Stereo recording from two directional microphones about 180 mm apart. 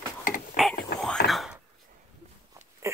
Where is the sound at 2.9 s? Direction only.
15° right (ahead or behind).